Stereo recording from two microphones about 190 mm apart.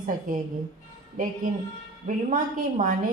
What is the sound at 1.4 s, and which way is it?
A woman's voice, 45° right (ahead or behind).